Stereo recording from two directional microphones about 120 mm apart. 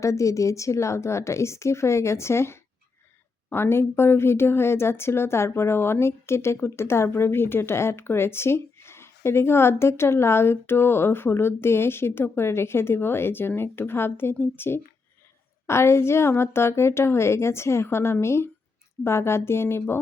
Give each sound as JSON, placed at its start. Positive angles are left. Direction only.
{"t": 0.0, "sound": "speech", "side_deg": 25}